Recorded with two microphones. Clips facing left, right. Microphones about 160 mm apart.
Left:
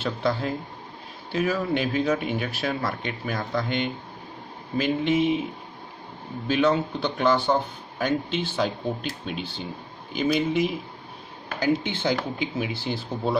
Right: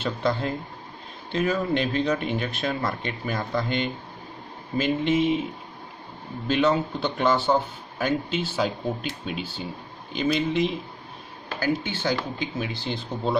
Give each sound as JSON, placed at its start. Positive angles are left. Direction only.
{"t": 0.0, "sound": "speech", "side_deg": 0}
{"t": 6.4, "sound": "speech", "side_deg": 0}